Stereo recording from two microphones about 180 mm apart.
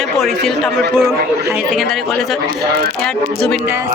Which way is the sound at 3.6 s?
10° right (ahead or behind).